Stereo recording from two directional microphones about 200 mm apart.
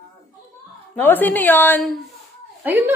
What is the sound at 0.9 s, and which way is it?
A woman's voice, 10° left (ahead or behind).